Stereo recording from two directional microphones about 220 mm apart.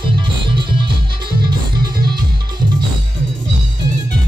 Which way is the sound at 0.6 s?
20° right (ahead or behind).